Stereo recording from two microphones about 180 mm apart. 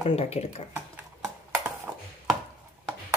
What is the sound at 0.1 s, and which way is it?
Speech, 35° left (ahead or behind).